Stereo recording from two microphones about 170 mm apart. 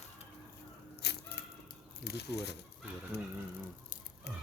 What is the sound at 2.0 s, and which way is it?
Speech, 75° left (ahead or behind).